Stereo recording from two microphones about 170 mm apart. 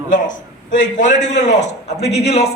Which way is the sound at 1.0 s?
45° left (ahead or behind).